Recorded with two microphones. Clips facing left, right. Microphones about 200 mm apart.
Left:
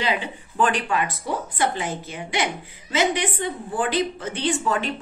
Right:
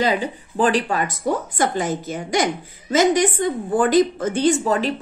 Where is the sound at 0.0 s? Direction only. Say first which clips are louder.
Right 5 dB; 40° right (ahead or behind).